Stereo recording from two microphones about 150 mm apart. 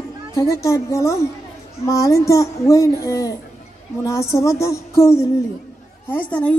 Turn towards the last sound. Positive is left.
turn(degrees=10)  # may be behind; listen again after turning